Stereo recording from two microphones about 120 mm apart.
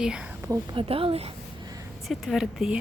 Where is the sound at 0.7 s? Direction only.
50° right (ahead or behind).